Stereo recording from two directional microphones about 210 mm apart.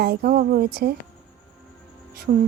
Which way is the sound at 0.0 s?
45° right (ahead or behind).